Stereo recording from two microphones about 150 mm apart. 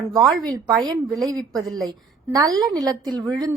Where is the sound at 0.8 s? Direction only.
25° right (ahead or behind).